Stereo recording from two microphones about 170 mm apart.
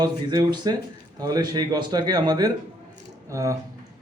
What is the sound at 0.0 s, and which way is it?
A man's voice, 25° right (ahead or behind).